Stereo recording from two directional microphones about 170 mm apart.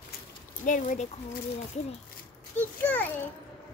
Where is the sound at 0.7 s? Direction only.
50° left (ahead or behind).